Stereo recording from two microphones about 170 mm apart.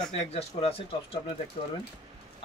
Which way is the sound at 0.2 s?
35° left (ahead or behind).